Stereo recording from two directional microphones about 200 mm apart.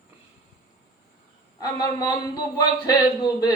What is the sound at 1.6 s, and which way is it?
Speech, 20° left (ahead or behind).